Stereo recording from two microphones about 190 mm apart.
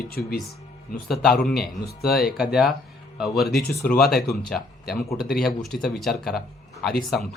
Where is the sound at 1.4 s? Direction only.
Centre (ahead or behind).